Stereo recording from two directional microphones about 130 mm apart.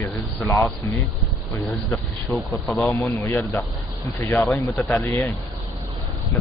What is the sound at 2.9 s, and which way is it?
Speech, 15° left (ahead or behind).